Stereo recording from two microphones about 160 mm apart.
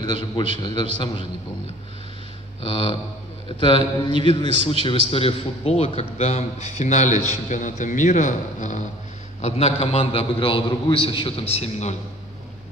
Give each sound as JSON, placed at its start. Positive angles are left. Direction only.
{"t": 0.0, "sound": "a man's voice", "side_deg": 30}
{"t": 2.6, "sound": "a man's voice", "side_deg": 35}
{"t": 9.4, "sound": "a man's voice", "side_deg": 40}